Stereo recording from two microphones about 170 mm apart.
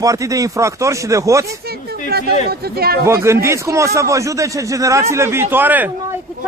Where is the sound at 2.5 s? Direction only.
65° right (ahead or behind).